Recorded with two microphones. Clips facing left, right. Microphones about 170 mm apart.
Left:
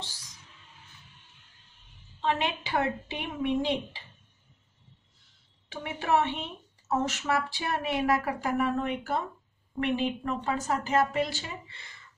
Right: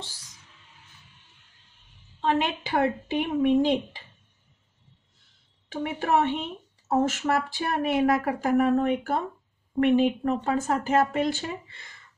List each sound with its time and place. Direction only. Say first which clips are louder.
2.2 s speech: right 4 dB; 50° right (ahead or behind)
5.7 s speech: right 3 dB; 50° right (ahead or behind)